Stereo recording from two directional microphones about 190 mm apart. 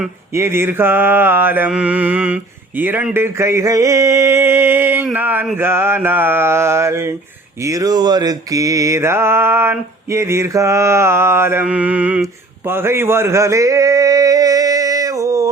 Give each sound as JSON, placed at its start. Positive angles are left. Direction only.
{"t": 0.3, "sound": "mantra", "side_deg": -15}